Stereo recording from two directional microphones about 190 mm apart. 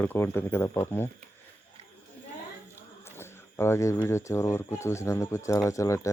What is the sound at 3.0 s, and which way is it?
Speech, 15° left (ahead or behind).